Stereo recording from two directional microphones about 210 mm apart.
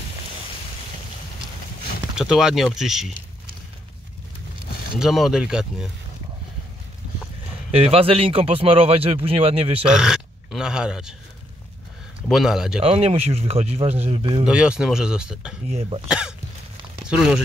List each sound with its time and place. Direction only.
2.1 s speech: centre (ahead or behind)
4.9 s speech: centre (ahead or behind)
7.7 s speech: 30° right (ahead or behind)
9.8 s speech: 5° right (ahead or behind)
12.3 s speech: centre (ahead or behind)
12.8 s speech: 30° right (ahead or behind)
14.4 s speech: 5° right (ahead or behind)
15.7 s speech: 30° right (ahead or behind)
16.1 s speech: 5° right (ahead or behind)